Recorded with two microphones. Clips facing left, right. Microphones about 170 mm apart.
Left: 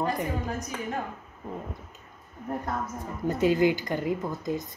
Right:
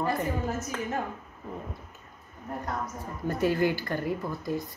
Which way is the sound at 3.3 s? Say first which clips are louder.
Left 3 dB; 20° left (ahead or behind).